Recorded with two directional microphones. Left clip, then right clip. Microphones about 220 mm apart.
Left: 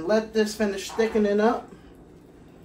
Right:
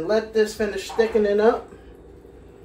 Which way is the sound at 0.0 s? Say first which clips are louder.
Right 3 dB; 25° left (ahead or behind).